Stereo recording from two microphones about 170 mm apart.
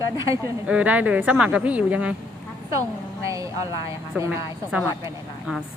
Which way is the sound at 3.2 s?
20° right (ahead or behind).